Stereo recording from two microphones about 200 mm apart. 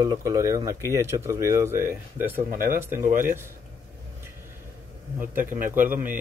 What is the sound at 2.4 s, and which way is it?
Speech, 45° right (ahead or behind).